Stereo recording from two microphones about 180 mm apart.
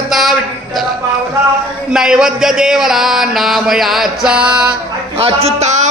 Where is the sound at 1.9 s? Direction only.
5° right (ahead or behind).